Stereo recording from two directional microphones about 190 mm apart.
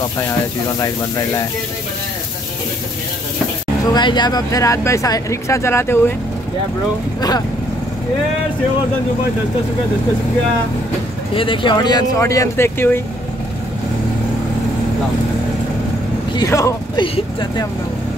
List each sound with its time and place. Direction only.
0.7 s speech: 15° left (ahead or behind)
3.9 s speech: 25° left (ahead or behind)
7.2 s speech: 20° left (ahead or behind)
11.3 s speech: 25° left (ahead or behind)
16.3 s speech: 15° left (ahead or behind)